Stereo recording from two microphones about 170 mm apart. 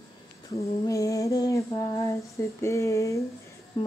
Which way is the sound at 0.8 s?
20° left (ahead or behind).